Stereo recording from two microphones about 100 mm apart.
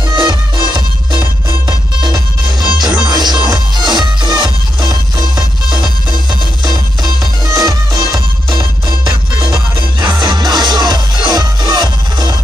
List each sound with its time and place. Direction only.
0.1 s music: 50° right (ahead or behind)